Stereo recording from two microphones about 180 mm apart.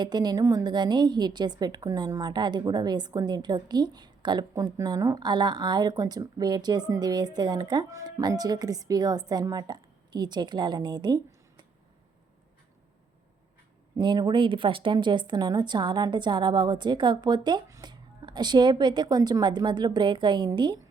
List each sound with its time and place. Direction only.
0.0 s a woman's voice: 25° right (ahead or behind)
13.9 s a woman's voice: 25° right (ahead or behind)